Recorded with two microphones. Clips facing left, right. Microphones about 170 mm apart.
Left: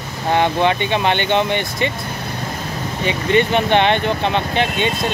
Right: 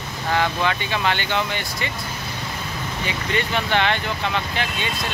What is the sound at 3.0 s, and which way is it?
Speech, 20° left (ahead or behind).